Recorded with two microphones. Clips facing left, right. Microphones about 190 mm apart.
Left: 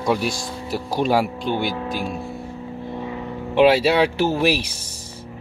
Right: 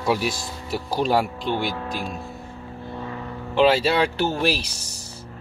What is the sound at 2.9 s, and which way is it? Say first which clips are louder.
Speech: left 2 dB; 15° left (ahead or behind).